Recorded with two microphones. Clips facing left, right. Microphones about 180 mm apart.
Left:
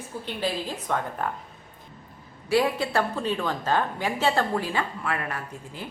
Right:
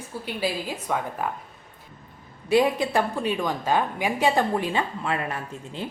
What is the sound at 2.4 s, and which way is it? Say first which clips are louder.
A woman's voice: right 3 dB; 20° right (ahead or behind).